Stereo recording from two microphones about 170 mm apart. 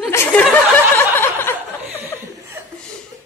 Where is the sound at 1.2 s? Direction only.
15° left (ahead or behind).